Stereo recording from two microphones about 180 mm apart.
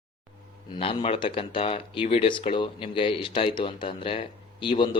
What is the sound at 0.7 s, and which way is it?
Speech, 30° left (ahead or behind).